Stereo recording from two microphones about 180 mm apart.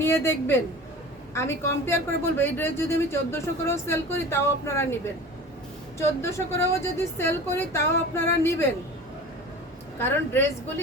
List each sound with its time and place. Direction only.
0.0 s a woman's voice: 15° left (ahead or behind)
6.0 s a woman's voice: 15° left (ahead or behind)